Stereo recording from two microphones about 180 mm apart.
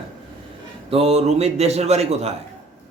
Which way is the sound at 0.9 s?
35° right (ahead or behind).